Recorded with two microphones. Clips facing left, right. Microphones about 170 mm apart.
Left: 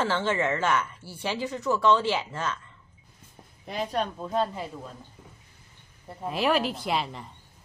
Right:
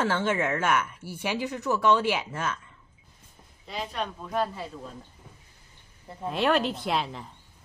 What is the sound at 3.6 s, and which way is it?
Speech, 45° left (ahead or behind).